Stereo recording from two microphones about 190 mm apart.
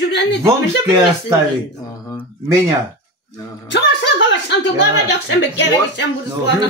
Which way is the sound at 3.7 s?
70° left (ahead or behind).